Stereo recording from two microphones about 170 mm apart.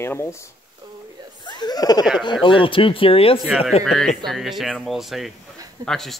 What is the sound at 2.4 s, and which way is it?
Speech, 30° left (ahead or behind).